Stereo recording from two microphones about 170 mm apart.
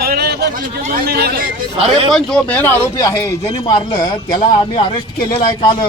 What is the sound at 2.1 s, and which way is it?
Speech, 5° left (ahead or behind).